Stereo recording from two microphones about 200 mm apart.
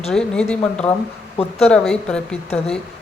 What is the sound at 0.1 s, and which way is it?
Speech, 5° left (ahead or behind).